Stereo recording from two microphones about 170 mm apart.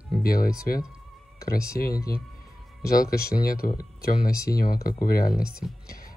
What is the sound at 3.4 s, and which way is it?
Speech, 60° left (ahead or behind).